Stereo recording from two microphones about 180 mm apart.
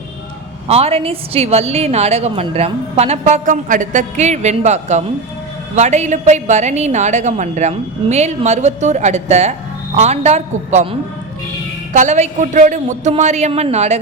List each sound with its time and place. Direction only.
0.7 s a woman's voice: 35° right (ahead or behind)
11.9 s a woman's voice: 40° right (ahead or behind)